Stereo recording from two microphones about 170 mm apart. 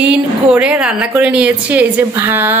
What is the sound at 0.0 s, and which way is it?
A woman's voice, 5° right (ahead or behind).